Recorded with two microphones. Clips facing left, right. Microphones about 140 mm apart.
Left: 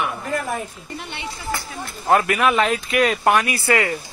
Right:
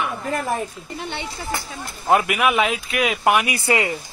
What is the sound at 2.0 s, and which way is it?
A man's voice, 15° right (ahead or behind).